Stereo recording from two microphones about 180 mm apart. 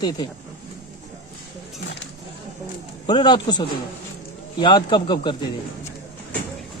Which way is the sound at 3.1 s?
25° left (ahead or behind).